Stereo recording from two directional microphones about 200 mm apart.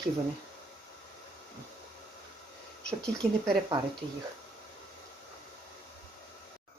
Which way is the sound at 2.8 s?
5° left (ahead or behind).